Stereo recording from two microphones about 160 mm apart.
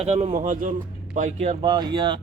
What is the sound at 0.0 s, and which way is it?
Speech, 45° right (ahead or behind).